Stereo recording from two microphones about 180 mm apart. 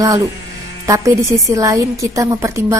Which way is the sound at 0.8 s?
20° right (ahead or behind).